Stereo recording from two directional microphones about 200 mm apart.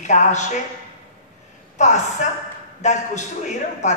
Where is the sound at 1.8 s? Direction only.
35° left (ahead or behind).